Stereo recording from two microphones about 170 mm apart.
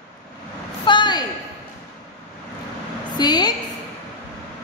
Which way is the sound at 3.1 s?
25° left (ahead or behind).